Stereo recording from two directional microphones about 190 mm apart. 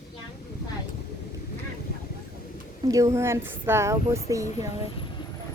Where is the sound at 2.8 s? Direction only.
15° right (ahead or behind).